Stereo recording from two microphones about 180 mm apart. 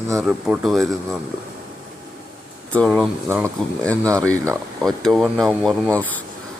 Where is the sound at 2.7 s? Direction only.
5° left (ahead or behind).